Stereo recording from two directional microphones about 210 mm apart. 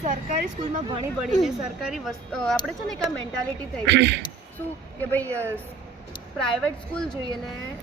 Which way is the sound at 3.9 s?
55° right (ahead or behind).